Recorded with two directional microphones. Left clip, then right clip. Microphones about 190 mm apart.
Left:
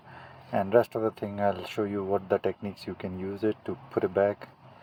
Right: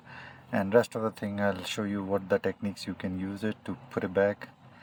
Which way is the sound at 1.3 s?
10° right (ahead or behind).